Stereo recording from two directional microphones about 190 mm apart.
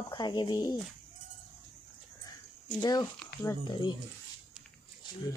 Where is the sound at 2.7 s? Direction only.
20° left (ahead or behind).